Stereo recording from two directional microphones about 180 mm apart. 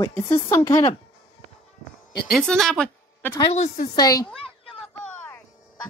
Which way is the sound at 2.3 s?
Centre (ahead or behind).